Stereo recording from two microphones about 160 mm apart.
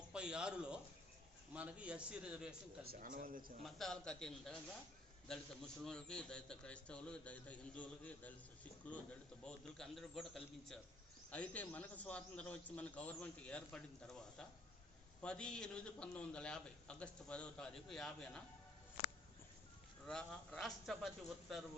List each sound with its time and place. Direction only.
0.1 s a man's voice: 5° right (ahead or behind)
2.8 s speech: 65° right (ahead or behind)
3.6 s a man's voice: centre (ahead or behind)
9.4 s a man's voice: 5° left (ahead or behind)
20.1 s a man's voice: 5° left (ahead or behind)